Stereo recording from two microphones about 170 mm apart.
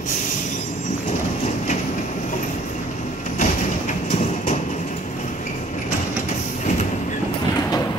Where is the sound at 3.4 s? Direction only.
45° left (ahead or behind).